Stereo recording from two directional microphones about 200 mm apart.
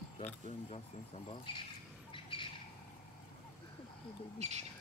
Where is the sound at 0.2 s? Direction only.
30° left (ahead or behind).